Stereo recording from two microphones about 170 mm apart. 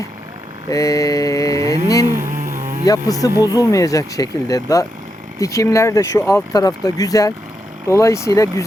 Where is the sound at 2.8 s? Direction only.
20° left (ahead or behind).